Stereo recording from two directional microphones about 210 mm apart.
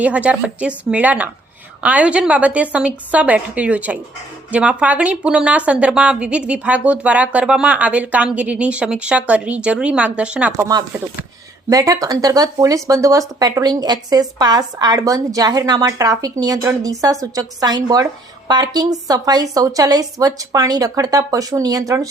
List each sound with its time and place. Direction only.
0.0 s speech: 5° right (ahead or behind)
11.7 s speech: 15° right (ahead or behind)